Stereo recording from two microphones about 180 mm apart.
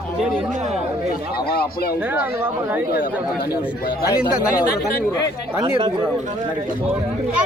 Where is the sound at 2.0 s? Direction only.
10° right (ahead or behind).